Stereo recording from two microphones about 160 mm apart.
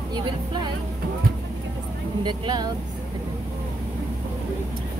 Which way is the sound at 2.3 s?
25° right (ahead or behind).